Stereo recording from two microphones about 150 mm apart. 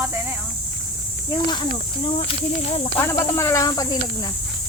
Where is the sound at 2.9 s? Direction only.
20° left (ahead or behind).